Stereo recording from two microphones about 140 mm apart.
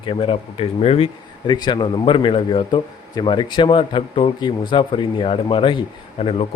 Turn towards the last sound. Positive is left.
turn(degrees=45)  # may be behind; listen again after turning